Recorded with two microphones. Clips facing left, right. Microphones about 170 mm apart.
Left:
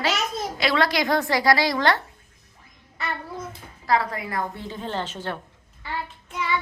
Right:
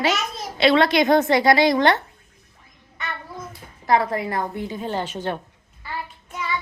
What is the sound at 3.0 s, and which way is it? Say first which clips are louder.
Child singing: left 2 dB; 30° left (ahead or behind).